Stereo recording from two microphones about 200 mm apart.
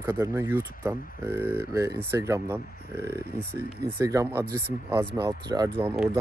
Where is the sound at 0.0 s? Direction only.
10° right (ahead or behind).